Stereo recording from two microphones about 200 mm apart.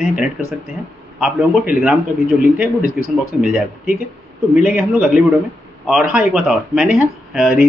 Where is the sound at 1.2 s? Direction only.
5° right (ahead or behind).